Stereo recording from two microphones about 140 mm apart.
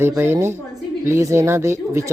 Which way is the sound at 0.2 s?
20° right (ahead or behind).